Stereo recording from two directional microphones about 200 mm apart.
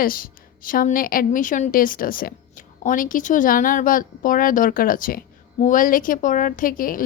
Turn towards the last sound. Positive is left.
turn(degrees=45)  # may be behind; listen again after turning